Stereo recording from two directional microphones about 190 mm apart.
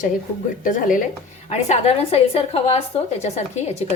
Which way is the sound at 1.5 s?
35° left (ahead or behind).